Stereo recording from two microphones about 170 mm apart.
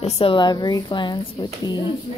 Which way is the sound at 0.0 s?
30° left (ahead or behind).